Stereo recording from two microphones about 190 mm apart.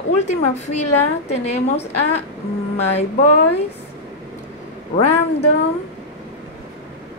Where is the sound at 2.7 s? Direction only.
35° left (ahead or behind).